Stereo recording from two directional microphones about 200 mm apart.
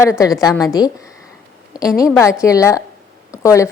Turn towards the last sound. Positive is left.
turn(degrees=15)  # may be behind; listen again after turning